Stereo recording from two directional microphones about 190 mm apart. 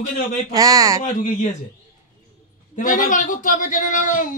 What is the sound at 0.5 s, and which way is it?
Speech, 20° right (ahead or behind).